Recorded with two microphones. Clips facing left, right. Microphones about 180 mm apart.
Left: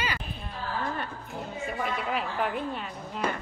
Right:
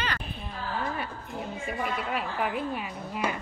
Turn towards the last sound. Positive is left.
turn(degrees=-10)  # may be behind; listen again after turning